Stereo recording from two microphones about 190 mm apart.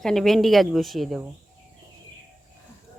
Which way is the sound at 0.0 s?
Centre (ahead or behind).